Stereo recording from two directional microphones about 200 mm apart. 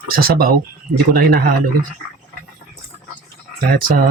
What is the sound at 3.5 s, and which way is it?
Speech, 45° right (ahead or behind).